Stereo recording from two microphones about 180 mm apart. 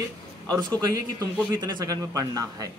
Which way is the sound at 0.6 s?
20° right (ahead or behind).